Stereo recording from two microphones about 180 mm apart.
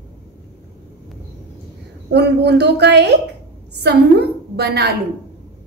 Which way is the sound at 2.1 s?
70° right (ahead or behind).